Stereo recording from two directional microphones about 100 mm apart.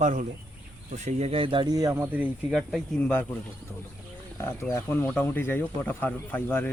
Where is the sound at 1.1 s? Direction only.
80° right; by 1.7 s 60° right (ahead or behind).